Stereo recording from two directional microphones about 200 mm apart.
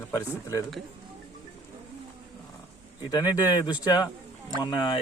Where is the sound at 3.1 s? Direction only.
20° left (ahead or behind).